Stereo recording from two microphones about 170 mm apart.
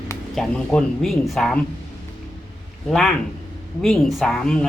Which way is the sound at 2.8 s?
Centre (ahead or behind).